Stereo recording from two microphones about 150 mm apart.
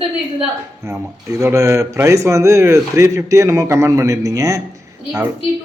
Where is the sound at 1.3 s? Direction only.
20° right (ahead or behind).